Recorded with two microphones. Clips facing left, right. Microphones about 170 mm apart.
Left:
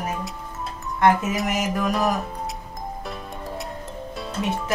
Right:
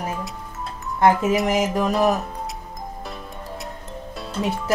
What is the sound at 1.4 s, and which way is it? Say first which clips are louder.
Music: right 4 dB; 25° right (ahead or behind).